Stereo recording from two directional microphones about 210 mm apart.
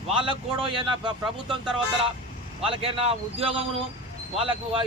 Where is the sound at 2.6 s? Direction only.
25° right (ahead or behind).